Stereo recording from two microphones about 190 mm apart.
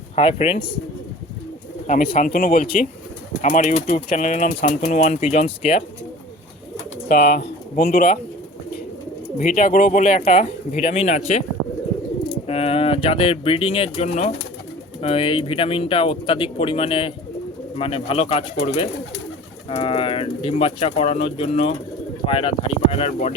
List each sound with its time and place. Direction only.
0.2 s speech: 30° left (ahead or behind)
1.9 s speech: 45° left (ahead or behind)
7.1 s speech: 45° left (ahead or behind)
9.4 s speech: 45° left (ahead or behind)
12.5 s speech: 30° left (ahead or behind)